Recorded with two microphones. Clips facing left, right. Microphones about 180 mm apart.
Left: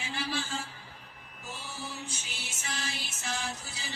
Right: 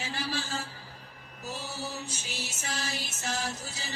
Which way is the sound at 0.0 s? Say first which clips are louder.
Right 1 dB; 40° right (ahead or behind).